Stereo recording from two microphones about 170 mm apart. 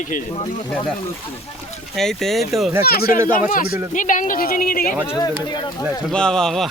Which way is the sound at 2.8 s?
65° left (ahead or behind).